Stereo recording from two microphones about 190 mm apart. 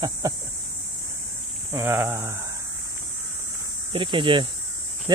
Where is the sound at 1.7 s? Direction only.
15° right (ahead or behind).